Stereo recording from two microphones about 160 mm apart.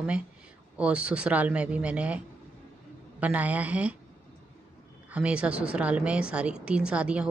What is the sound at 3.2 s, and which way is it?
Speech, 10° right (ahead or behind).